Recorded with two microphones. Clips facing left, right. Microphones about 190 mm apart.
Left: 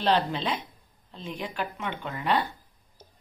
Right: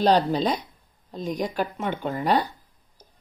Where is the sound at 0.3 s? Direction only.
40° right (ahead or behind).